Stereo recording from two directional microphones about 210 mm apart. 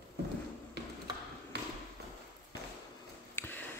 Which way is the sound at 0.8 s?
50° right (ahead or behind).